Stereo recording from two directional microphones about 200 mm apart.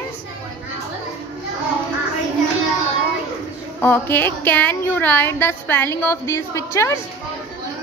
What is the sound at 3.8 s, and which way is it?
A woman's voice, 10° left (ahead or behind).